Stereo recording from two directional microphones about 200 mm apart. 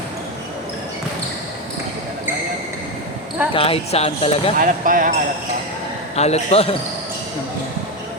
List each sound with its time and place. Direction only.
3.5 s speech: 30° left (ahead or behind)
4.5 s speech: 45° right (ahead or behind)
6.1 s a man's voice: 30° left (ahead or behind)